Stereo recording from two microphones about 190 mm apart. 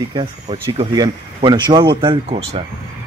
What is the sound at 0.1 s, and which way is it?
Speech, 30° right (ahead or behind).